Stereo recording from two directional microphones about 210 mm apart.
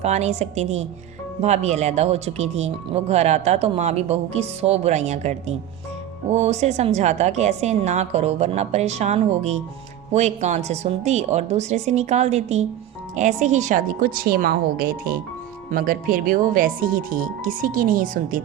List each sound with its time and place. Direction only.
0.0 s a woman's voice: 30° right (ahead or behind)